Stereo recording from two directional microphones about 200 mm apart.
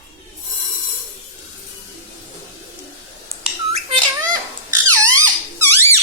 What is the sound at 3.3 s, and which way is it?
Squawk, 30° right (ahead or behind).